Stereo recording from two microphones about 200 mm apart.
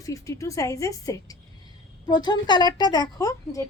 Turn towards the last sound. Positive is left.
turn(degrees=15)  # may be behind; listen again after turning